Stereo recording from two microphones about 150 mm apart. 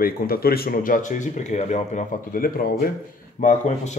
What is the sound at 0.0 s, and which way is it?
Speech, 90° left.